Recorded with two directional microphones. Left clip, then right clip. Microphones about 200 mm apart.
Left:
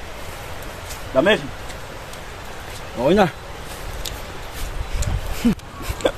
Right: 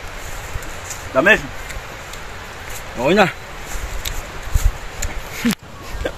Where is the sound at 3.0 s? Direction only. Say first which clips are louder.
Right 2 dB; 5° left (ahead or behind).